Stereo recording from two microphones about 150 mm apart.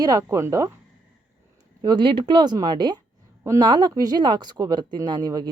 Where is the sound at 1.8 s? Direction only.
30° right (ahead or behind).